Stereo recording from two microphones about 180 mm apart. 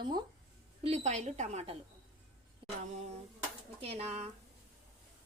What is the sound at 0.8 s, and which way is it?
Speech, 40° right (ahead or behind).